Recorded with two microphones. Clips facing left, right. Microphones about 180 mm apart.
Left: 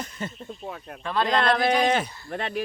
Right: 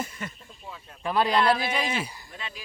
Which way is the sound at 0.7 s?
60° left (ahead or behind).